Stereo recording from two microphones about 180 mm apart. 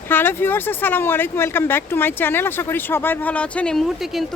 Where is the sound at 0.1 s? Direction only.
10° left (ahead or behind).